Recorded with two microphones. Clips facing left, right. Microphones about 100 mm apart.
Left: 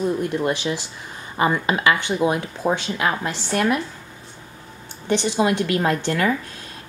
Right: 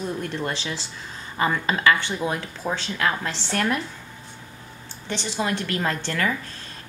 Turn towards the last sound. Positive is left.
turn(degrees=15)  # may be behind; listen again after turning